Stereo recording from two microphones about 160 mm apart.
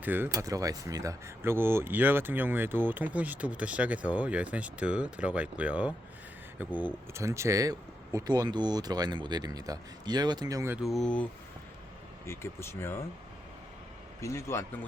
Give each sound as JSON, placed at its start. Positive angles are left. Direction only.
{"t": 0.0, "sound": "speech", "side_deg": -10}
{"t": 10.8, "sound": "speech", "side_deg": 0}
{"t": 12.2, "sound": "speech", "side_deg": 15}
{"t": 14.2, "sound": "speech", "side_deg": 20}